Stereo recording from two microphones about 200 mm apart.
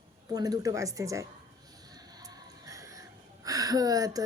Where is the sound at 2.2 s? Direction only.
15° right (ahead or behind).